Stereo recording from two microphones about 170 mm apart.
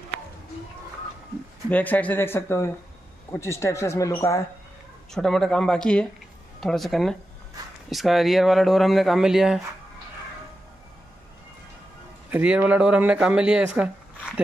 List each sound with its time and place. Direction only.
1.7 s speech: 10° left (ahead or behind)
5.1 s speech: 5° left (ahead or behind)
12.3 s speech: 10° right (ahead or behind)